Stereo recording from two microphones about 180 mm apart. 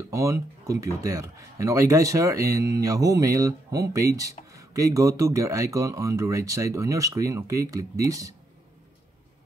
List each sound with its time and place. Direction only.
0.1 s speech: 15° right (ahead or behind)